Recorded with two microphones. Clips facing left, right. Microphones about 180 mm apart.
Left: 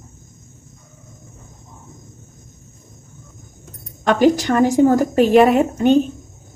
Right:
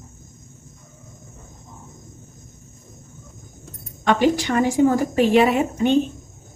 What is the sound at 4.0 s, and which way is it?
A woman's voice, 45° left (ahead or behind).